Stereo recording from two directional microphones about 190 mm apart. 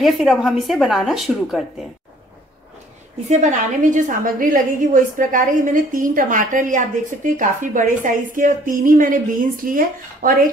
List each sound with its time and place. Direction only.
0.0 s speech: centre (ahead or behind)
3.9 s a woman's voice: 45° right (ahead or behind)